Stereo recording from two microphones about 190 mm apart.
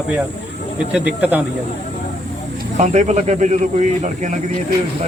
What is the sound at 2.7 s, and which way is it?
A man's voice, 40° right (ahead or behind).